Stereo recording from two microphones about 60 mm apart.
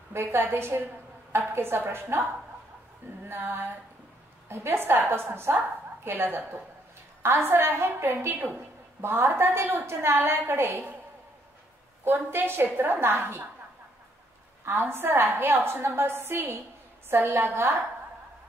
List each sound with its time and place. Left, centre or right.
0.1 s a woman's voice: right
3.3 s a woman's voice: right
12.0 s a woman's voice: right
14.6 s a woman's voice: right